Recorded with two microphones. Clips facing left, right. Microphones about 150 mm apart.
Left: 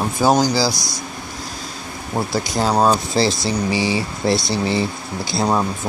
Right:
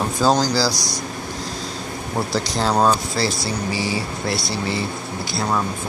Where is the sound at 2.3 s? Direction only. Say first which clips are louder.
Left 2 dB; 10° left (ahead or behind).